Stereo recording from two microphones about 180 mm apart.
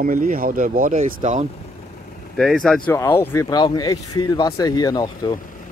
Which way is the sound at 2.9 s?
15° left (ahead or behind).